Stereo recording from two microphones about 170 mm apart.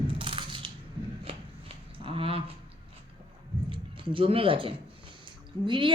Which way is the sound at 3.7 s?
30° right (ahead or behind).